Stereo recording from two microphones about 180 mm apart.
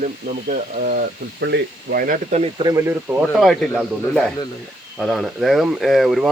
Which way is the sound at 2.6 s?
15° right (ahead or behind).